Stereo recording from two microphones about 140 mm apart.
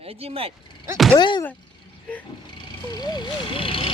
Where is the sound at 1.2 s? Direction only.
35° left (ahead or behind).